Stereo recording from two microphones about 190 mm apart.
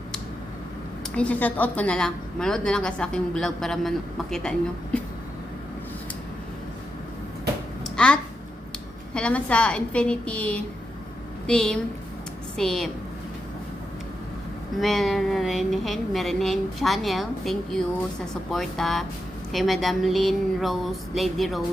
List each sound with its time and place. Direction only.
1.1 s a woman's voice: 5° left (ahead or behind)
7.9 s babbling: 5° left (ahead or behind)
9.1 s a woman's voice: 5° left (ahead or behind)
14.8 s a woman's voice: centre (ahead or behind)